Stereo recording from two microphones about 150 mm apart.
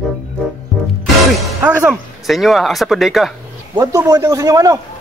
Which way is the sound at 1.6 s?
5° right (ahead or behind).